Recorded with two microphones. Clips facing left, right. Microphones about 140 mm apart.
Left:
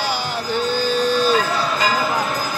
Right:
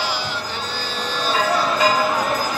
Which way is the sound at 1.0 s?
45° left (ahead or behind).